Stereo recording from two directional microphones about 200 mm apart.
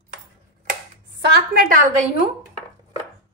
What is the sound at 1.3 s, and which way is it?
Speech, 50° right (ahead or behind).